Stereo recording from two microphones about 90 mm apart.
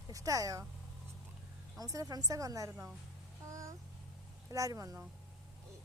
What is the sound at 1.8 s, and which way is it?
Speech, 40° right (ahead or behind).